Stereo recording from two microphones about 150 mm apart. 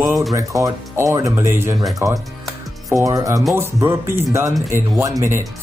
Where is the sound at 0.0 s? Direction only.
Centre (ahead or behind).